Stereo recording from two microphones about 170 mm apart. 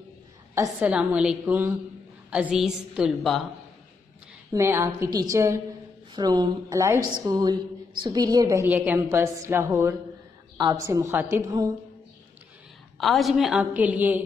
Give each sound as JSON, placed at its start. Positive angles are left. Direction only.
{"t": 0.6, "sound": "a woman's voice", "side_deg": -10}
{"t": 4.5, "sound": "a woman's voice", "side_deg": -15}
{"t": 12.9, "sound": "a woman's voice", "side_deg": 0}